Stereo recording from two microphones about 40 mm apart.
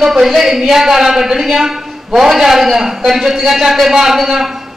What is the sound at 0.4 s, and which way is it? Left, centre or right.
A man's voice, centre.